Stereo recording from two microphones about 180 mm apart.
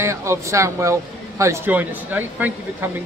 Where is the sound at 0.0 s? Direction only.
15° right (ahead or behind).